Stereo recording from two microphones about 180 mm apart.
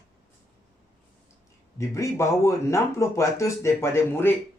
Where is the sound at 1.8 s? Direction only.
15° left (ahead or behind).